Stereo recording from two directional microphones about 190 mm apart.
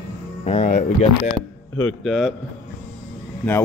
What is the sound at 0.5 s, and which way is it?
Speech, 40° left (ahead or behind).